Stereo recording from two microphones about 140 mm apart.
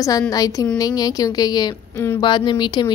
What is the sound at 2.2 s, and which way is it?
Speech, 35° left (ahead or behind).